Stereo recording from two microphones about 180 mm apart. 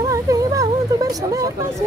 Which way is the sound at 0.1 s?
20° right (ahead or behind).